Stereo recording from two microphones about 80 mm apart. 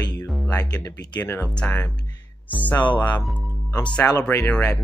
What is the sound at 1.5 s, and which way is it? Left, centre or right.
Speech, centre.